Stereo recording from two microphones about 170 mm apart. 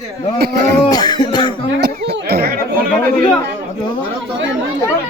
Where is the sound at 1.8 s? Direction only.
70° right (ahead or behind).